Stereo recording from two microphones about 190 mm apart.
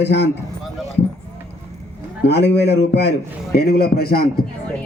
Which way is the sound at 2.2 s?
65° left (ahead or behind).